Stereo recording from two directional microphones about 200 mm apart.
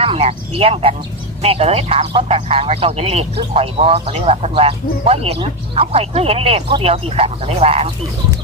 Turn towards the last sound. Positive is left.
turn(degrees=-30)  # may be behind; listen again after turning